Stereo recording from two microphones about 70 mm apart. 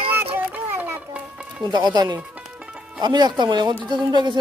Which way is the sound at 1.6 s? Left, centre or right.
Right.